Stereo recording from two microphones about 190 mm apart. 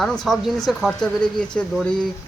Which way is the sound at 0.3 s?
Centre (ahead or behind).